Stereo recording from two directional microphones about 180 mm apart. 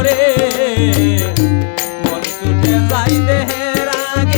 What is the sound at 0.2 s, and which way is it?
Music, 15° left (ahead or behind).